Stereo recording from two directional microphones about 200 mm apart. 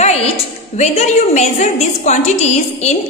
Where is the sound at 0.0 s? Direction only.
30° left (ahead or behind).